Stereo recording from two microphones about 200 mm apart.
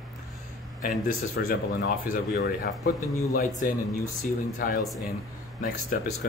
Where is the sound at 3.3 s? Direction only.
45° left (ahead or behind).